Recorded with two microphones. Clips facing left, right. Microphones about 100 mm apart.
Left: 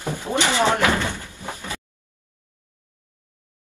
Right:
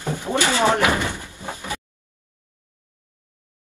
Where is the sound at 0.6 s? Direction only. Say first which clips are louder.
Right 1 dB; 15° right (ahead or behind).